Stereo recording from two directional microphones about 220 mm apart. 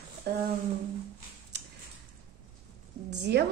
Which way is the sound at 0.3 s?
45° right (ahead or behind).